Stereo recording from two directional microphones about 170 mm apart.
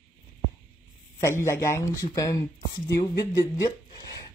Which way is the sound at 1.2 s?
15° left (ahead or behind).